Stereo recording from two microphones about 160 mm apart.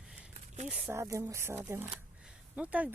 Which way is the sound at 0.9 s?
15° right (ahead or behind).